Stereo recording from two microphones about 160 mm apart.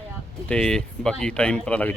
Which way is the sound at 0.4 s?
5° left (ahead or behind).